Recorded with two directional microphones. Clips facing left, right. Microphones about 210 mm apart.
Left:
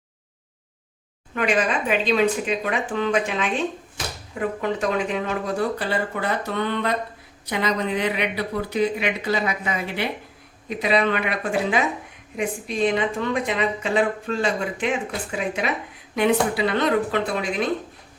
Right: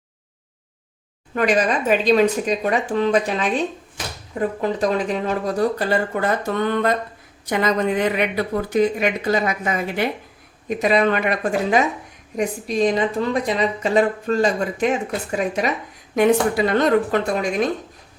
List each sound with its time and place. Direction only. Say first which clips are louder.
1.4 s a woman's voice: right 3 dB; 40° right (ahead or behind)